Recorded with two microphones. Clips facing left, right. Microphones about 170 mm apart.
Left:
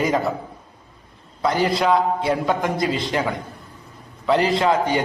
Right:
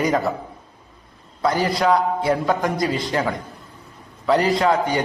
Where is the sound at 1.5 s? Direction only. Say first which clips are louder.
Even; 25° left (ahead or behind).